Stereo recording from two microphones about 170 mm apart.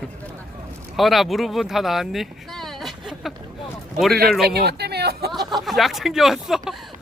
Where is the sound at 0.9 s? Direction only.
Centre (ahead or behind).